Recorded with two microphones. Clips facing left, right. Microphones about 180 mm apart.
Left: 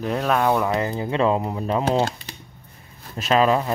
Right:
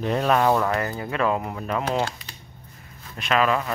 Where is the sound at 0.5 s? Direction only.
15° left (ahead or behind).